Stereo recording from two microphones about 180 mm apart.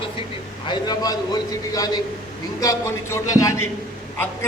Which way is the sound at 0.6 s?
20° left (ahead or behind).